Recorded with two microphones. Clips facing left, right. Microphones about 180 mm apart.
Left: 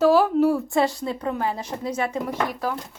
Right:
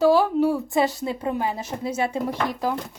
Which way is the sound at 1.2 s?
10° right (ahead or behind).